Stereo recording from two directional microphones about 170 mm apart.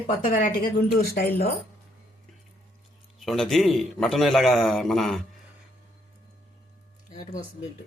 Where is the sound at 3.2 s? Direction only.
Centre (ahead or behind).